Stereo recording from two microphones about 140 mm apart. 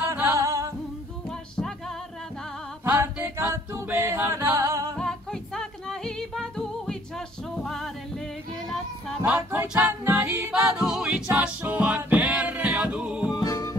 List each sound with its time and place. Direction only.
0.1 s music: 20° right (ahead or behind)
2.8 s a capella: 10° right (ahead or behind)
4.9 s music: 5° left (ahead or behind)
9.2 s music: 10° right (ahead or behind)
10.7 s music: 5° right (ahead or behind)
13.4 s music: 25° left (ahead or behind)